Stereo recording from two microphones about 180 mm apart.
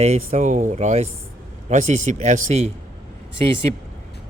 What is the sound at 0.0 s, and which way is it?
Speech, 35° right (ahead or behind).